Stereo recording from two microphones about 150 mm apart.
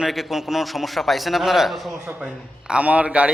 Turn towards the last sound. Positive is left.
turn(degrees=-5)  # may be behind; listen again after turning